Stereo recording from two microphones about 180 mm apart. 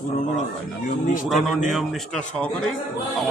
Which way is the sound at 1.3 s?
Centre (ahead or behind).